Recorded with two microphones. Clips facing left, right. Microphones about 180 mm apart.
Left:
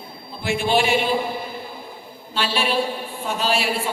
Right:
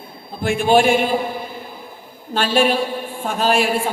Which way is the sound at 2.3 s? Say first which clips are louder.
Right 5 dB; 50° right (ahead or behind).